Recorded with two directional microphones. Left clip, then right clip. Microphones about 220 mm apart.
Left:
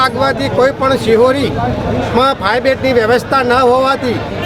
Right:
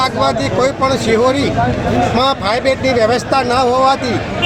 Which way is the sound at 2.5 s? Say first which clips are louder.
Left 2 dB; 5° left (ahead or behind).